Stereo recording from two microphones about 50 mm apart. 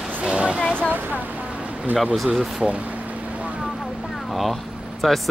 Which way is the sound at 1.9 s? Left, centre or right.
Centre.